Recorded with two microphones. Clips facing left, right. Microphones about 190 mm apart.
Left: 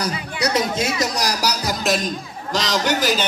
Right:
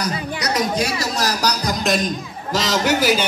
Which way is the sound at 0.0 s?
30° left (ahead or behind).